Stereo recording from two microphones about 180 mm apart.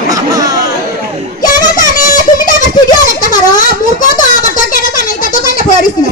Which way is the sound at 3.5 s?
45° left (ahead or behind).